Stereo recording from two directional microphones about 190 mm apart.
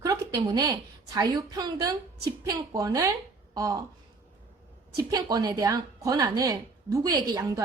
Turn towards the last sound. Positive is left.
turn(degrees=-15)  # may be behind; listen again after turning